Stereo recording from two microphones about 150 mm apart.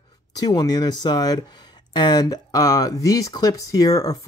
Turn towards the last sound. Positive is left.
turn(degrees=25)  # may be behind; listen again after turning